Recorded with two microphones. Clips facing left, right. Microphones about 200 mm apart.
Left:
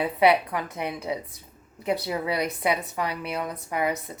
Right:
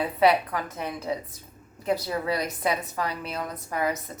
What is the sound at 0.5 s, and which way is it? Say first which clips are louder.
Speech: left 1 dB; 15° left (ahead or behind).